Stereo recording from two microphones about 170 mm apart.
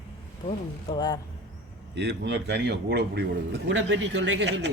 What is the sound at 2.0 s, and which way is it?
A man's voice, 90° right.